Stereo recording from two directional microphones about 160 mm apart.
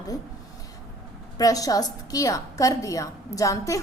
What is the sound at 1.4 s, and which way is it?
A woman's voice, 20° left (ahead or behind).